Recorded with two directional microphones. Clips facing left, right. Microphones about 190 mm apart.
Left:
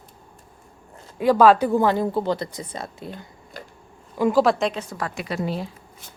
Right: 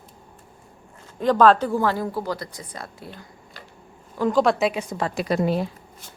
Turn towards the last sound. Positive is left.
turn(degrees=-55)  # may be behind; listen again after turning